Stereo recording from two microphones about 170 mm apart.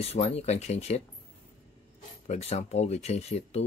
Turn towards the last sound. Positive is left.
turn(degrees=40)  # may be behind; listen again after turning